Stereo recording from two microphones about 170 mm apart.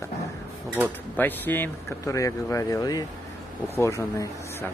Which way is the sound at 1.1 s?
10° left (ahead or behind).